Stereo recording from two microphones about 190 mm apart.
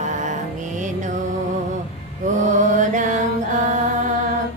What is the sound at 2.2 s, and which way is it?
Mantra, 40° right (ahead or behind).